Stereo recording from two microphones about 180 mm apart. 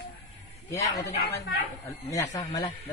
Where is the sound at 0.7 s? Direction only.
20° left (ahead or behind).